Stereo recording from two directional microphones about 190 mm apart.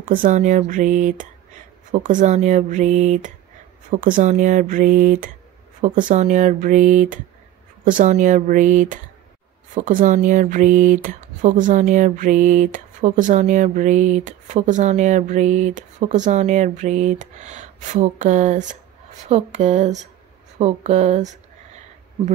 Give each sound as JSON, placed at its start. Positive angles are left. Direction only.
{"t": 0.0, "sound": "speech", "side_deg": -45}